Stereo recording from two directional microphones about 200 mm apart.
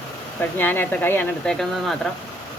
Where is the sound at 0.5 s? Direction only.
10° left (ahead or behind).